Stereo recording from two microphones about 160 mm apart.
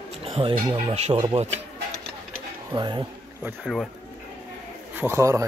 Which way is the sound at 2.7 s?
30° right (ahead or behind).